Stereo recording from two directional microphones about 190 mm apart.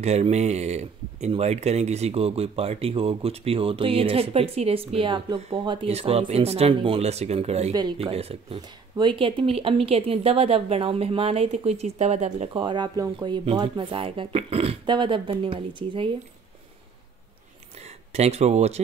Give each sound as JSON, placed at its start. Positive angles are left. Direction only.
{"t": 0.0, "sound": "speech", "side_deg": -35}
{"t": 17.7, "sound": "speech", "side_deg": -35}